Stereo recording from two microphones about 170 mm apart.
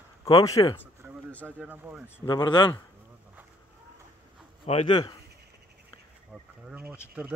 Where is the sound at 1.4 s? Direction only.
10° right (ahead or behind).